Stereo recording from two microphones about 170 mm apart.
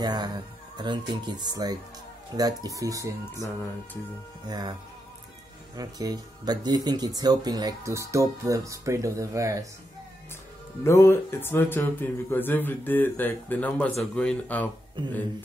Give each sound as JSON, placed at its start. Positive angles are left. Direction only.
{"t": 0.0, "sound": "speech", "side_deg": -25}
{"t": 3.3, "sound": "speech", "side_deg": 15}
{"t": 4.5, "sound": "speech", "side_deg": -25}
{"t": 5.8, "sound": "speech", "side_deg": -20}
{"t": 10.8, "sound": "speech", "side_deg": 15}